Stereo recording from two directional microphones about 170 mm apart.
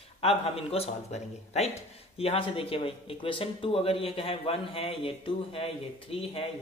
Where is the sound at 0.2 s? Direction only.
35° left (ahead or behind).